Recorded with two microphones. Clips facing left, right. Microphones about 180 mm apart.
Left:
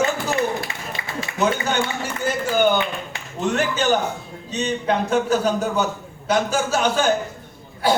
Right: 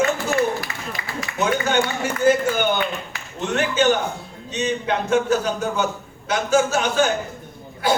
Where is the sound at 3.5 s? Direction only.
35° left (ahead or behind).